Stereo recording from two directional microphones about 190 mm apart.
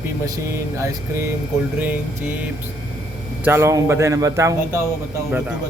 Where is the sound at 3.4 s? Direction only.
10° right (ahead or behind).